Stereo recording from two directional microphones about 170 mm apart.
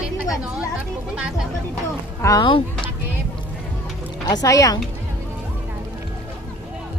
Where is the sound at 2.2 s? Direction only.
25° left (ahead or behind).